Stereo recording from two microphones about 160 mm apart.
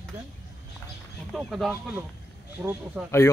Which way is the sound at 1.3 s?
Centre (ahead or behind).